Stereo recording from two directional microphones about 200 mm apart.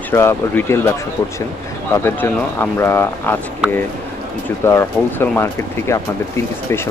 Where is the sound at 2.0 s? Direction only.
10° left (ahead or behind).